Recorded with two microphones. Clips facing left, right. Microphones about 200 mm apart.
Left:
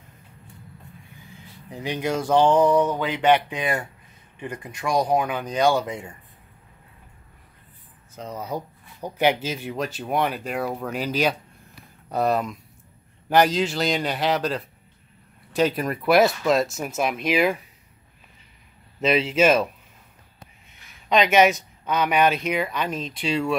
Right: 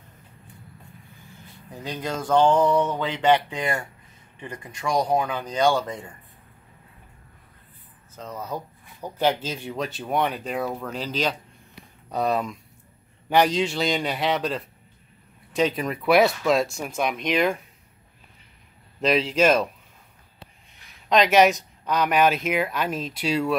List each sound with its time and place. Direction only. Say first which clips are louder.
1.2 s speech: left 2 dB; 10° left (ahead or behind)
8.2 s speech: left 2 dB; 15° left (ahead or behind)
18.9 s speech: left 1 dB; centre (ahead or behind)
21.1 s speech: even; centre (ahead or behind)